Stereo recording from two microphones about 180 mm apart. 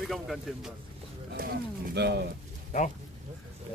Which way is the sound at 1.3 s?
60° right (ahead or behind).